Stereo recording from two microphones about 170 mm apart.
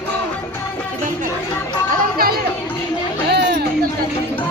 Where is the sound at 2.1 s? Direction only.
60° right (ahead or behind).